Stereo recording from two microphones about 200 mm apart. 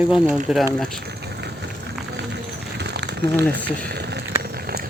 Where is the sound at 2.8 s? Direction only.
60° right (ahead or behind).